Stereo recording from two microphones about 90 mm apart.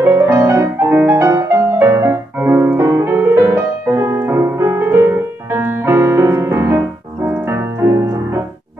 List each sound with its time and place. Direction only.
0.0 s music: 30° right (ahead or behind)